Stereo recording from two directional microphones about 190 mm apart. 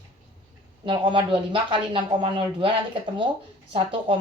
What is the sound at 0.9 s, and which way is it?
Speech, 25° right (ahead or behind).